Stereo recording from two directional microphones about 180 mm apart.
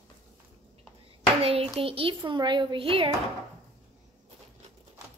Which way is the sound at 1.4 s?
30° right (ahead or behind).